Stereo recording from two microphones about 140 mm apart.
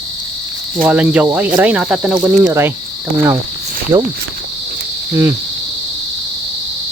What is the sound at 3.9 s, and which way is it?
Speech, 30° right (ahead or behind).